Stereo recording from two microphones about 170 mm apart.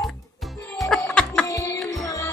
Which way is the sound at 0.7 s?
5° left (ahead or behind).